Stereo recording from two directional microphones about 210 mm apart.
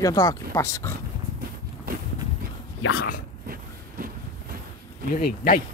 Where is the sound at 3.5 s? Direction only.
45° right (ahead or behind).